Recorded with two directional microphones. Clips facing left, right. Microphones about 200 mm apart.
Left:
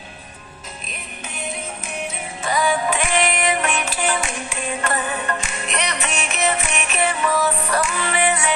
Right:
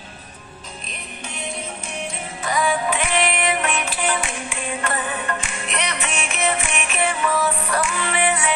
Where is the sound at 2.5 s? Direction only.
35° left (ahead or behind).